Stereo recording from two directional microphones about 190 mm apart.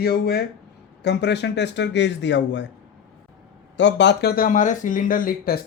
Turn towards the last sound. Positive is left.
turn(degrees=50)  # may be behind; listen again after turning